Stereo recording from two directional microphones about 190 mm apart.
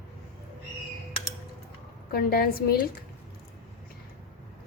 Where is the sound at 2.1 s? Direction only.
55° left (ahead or behind).